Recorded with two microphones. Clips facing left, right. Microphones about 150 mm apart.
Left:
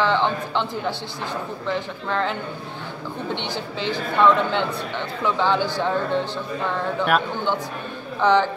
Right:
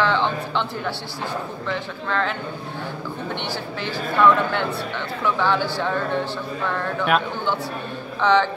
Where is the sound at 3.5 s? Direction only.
15° left (ahead or behind).